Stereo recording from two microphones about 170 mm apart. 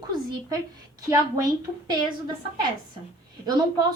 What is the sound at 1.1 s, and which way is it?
Speech, 20° right (ahead or behind).